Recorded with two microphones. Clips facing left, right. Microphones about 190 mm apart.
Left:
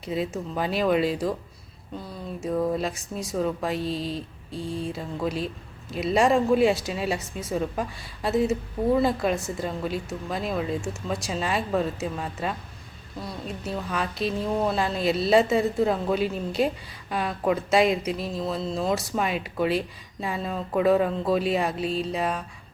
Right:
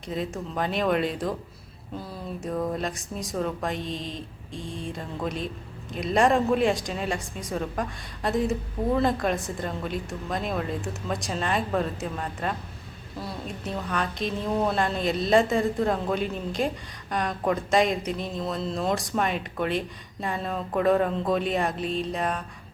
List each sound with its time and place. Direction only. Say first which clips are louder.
0.0 s speech: left 2 dB; 5° left (ahead or behind)